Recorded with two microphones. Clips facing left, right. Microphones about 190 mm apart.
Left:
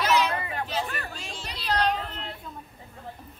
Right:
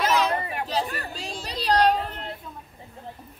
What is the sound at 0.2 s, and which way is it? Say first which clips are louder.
Chatter: right 2 dB; 40° right (ahead or behind).